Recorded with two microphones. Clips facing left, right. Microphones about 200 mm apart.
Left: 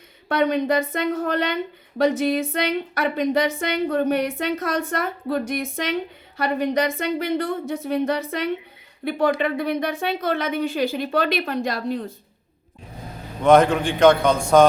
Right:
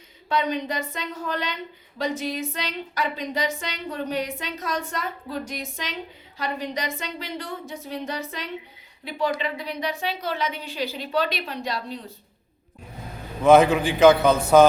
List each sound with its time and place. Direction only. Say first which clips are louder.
0.3 s a woman's voice: left 6 dB; 55° left (ahead or behind)
13.4 s a man's voice: even; 5° right (ahead or behind)